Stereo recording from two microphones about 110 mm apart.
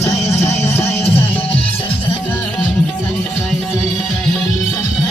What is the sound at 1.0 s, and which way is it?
Music, 65° left (ahead or behind).